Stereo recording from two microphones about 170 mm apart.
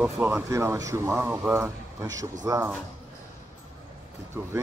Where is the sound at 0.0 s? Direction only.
10° right (ahead or behind).